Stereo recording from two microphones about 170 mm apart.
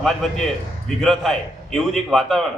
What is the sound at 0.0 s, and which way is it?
A man's voice, centre (ahead or behind).